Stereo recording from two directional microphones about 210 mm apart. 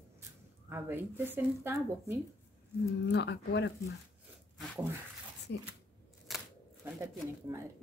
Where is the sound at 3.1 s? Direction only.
55° left (ahead or behind).